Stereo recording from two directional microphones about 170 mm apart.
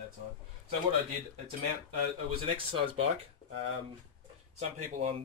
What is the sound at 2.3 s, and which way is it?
Speech, 30° right (ahead or behind).